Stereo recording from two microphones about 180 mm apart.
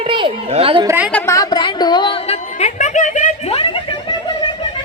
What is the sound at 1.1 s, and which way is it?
A woman's voice, 15° left (ahead or behind).